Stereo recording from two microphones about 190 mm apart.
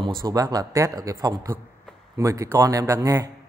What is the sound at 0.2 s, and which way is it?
A man's voice, 20° right (ahead or behind).